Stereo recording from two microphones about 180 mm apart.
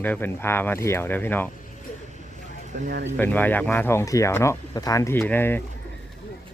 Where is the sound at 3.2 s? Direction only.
10° left (ahead or behind).